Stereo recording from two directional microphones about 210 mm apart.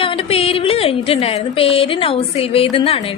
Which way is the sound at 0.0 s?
25° left (ahead or behind).